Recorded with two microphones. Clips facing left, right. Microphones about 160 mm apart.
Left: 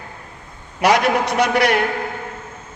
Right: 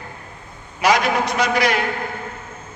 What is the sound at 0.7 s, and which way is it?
A man's voice, 65° left (ahead or behind).